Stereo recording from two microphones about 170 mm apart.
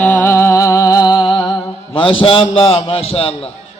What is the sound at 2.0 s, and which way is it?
A man's voice, 30° left (ahead or behind).